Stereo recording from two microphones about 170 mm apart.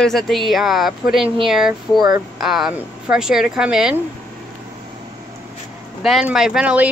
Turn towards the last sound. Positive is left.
turn(degrees=-10)  # may be behind; listen again after turning